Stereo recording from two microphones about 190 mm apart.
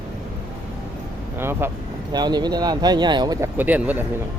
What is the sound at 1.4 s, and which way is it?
Speech, 10° right (ahead or behind).